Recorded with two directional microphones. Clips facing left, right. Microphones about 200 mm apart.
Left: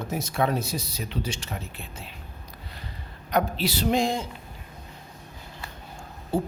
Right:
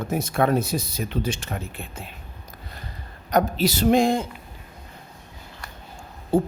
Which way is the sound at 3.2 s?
45° right (ahead or behind).